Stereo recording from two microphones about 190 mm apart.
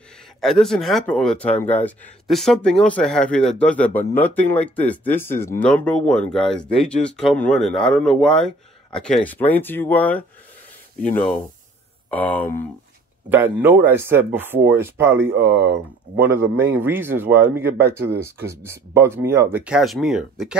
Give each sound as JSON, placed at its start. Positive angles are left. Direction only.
{"t": 0.4, "sound": "speech", "side_deg": 0}
{"t": 12.1, "sound": "speech", "side_deg": 10}
{"t": 13.3, "sound": "speech", "side_deg": -10}
{"t": 15.5, "sound": "speech", "side_deg": -65}
{"t": 16.3, "sound": "speech", "side_deg": -10}